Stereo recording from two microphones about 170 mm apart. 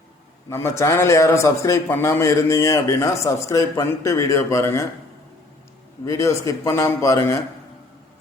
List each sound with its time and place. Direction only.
0.5 s a man's voice: 15° left (ahead or behind)
6.1 s a man's voice: 20° left (ahead or behind)